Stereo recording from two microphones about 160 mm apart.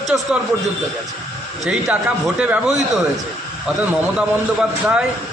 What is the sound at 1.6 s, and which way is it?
A man's voice, 5° right (ahead or behind).